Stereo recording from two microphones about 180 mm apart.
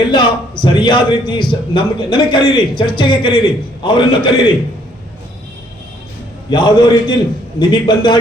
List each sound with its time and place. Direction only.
0.1 s a man's voice: 25° left (ahead or behind)
6.5 s a man's voice: 25° left (ahead or behind)